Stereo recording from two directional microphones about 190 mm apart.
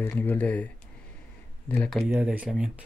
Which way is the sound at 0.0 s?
10° left (ahead or behind).